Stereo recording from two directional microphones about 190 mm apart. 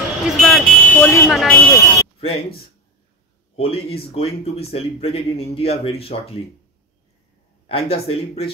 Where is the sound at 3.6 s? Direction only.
30° left (ahead or behind).